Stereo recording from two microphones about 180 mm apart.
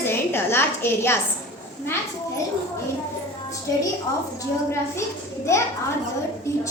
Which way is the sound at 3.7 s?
15° left (ahead or behind).